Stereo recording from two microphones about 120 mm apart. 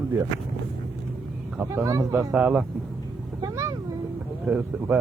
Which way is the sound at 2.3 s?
10° right (ahead or behind).